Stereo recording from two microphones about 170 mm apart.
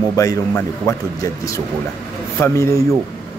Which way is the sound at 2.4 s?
15° left (ahead or behind).